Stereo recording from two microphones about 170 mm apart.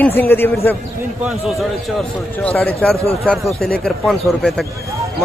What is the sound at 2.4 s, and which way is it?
A man's voice, 5° left (ahead or behind).